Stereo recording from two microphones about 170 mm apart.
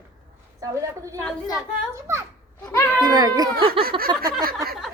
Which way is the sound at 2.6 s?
15° left (ahead or behind).